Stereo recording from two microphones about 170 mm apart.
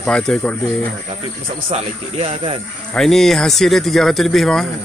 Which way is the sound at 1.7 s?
40° right (ahead or behind).